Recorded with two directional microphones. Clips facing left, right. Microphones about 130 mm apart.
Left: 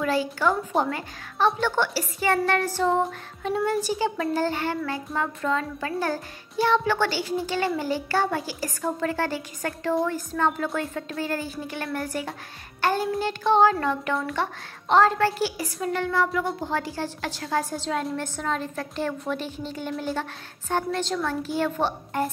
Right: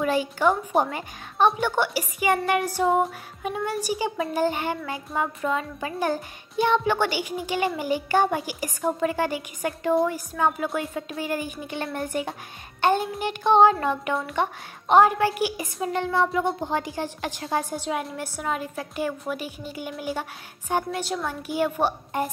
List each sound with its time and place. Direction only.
0.0 s a woman's voice: 15° right (ahead or behind)